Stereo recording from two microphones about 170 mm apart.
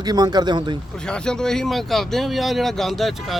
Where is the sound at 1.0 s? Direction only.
5° left (ahead or behind).